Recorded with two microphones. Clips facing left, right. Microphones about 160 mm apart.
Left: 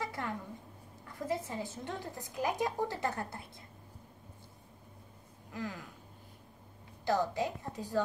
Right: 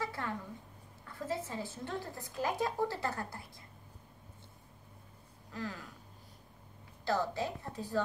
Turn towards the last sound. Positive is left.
turn(degrees=15)  # may be behind; listen again after turning